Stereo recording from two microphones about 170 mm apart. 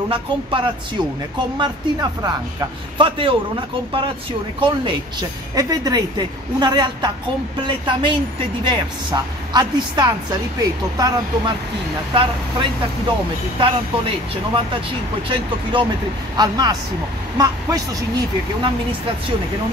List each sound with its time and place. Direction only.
0.1 s a woman's voice: 30° right (ahead or behind)
5.5 s a woman's voice: 20° right (ahead or behind)